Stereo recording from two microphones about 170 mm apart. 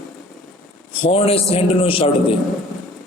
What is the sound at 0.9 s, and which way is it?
A man's voice, 35° left (ahead or behind).